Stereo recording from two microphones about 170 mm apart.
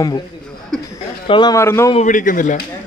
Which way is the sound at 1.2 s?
30° left (ahead or behind).